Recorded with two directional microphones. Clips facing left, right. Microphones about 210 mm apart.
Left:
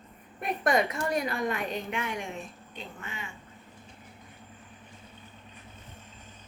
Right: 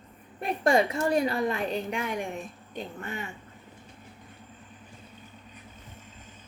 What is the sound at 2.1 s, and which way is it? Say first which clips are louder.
Speech: right 4 dB; 50° right (ahead or behind).